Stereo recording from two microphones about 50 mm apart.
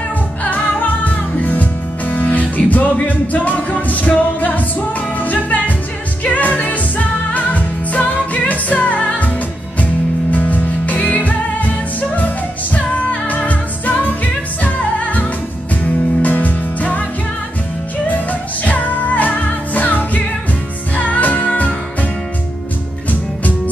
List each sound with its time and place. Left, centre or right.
0.4 s music: left
10.3 s music: left
12.7 s music: left
18.0 s music: left